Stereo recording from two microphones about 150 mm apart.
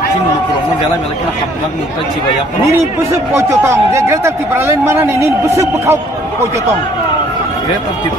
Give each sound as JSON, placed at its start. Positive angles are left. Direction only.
{"t": 2.7, "sound": "a man's voice", "side_deg": -20}